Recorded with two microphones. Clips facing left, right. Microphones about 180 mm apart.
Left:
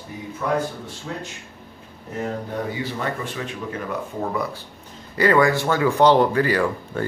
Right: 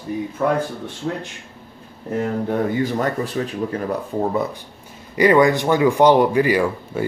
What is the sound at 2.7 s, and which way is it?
Speech, 45° right (ahead or behind).